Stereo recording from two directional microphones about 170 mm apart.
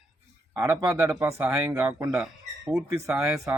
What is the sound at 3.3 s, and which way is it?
Speech, 20° right (ahead or behind).